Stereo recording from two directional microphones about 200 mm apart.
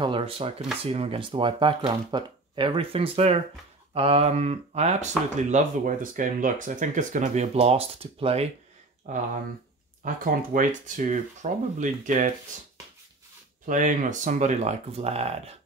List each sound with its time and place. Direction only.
0.0 s speech: 25° right (ahead or behind)
13.7 s speech: 40° right (ahead or behind)